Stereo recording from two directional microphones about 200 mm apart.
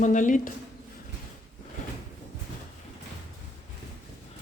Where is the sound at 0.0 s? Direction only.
40° left (ahead or behind).